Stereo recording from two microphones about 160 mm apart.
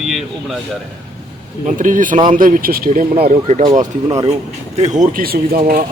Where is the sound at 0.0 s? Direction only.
Centre (ahead or behind).